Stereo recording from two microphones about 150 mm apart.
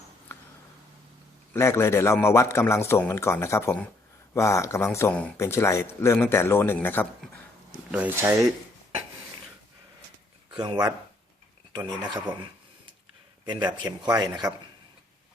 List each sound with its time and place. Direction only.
0.3 s a sound: 15° left (ahead or behind)
1.5 s speech: 15° left (ahead or behind)
7.9 s speech: 10° right (ahead or behind)
10.5 s a man's voice: 30° right (ahead or behind)
13.4 s a man's voice: 30° right (ahead or behind)